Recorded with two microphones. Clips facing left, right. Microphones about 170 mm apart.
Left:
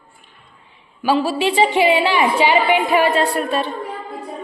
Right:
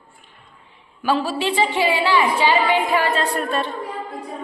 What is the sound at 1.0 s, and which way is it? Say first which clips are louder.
A woman's voice: left 3 dB; 10° left (ahead or behind).